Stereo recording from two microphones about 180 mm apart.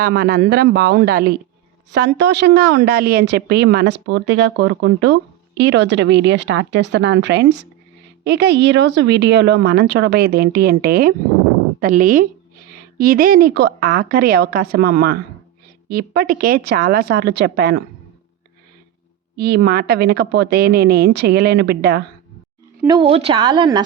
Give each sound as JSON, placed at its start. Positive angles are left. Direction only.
{"t": 0.0, "sound": "speech", "side_deg": -60}
{"t": 1.9, "sound": "a woman's voice", "side_deg": -70}
{"t": 19.4, "sound": "speech", "side_deg": -60}
{"t": 22.9, "sound": "a woman's voice", "side_deg": -30}